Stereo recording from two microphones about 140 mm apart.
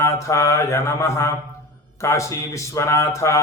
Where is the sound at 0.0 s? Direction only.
20° left (ahead or behind).